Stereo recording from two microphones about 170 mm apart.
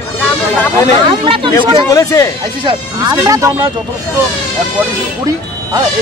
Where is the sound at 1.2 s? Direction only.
30° right (ahead or behind).